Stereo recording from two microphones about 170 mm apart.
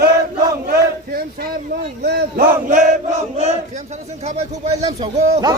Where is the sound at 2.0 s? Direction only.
55° right (ahead or behind).